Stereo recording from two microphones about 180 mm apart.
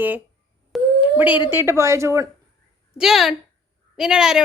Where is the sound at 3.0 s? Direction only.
Centre (ahead or behind).